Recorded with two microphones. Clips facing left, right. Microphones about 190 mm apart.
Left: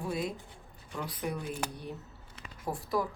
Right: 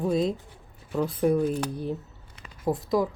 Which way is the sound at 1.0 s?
35° right (ahead or behind).